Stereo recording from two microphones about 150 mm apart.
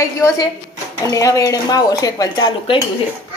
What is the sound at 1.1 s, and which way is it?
A woman's voice, 20° left (ahead or behind).